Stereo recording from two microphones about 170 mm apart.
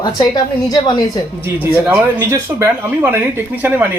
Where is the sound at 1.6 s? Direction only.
15° right (ahead or behind).